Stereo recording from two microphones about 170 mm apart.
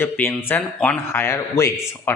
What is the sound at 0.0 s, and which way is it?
Speech, 10° left (ahead or behind).